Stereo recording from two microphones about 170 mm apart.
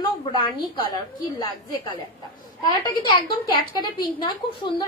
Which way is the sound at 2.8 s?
25° left (ahead or behind).